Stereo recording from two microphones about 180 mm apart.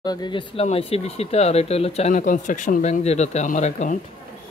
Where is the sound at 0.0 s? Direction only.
20° left (ahead or behind); by 4.0 s 45° left (ahead or behind).